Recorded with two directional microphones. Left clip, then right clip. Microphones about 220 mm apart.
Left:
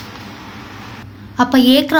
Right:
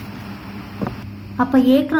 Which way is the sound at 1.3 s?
50° left (ahead or behind).